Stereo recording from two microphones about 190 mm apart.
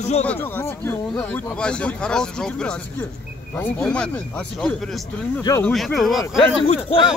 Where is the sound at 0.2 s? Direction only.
10° left (ahead or behind).